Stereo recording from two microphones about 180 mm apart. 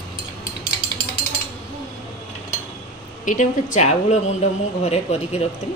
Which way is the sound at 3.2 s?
45° left (ahead or behind).